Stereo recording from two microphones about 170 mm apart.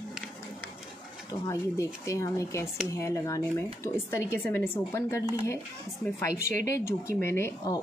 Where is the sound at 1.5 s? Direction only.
20° left (ahead or behind).